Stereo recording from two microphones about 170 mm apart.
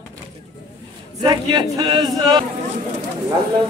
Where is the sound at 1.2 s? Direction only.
25° right (ahead or behind).